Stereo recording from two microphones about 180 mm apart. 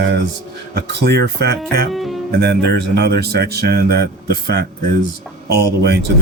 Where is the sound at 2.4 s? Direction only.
65° right (ahead or behind).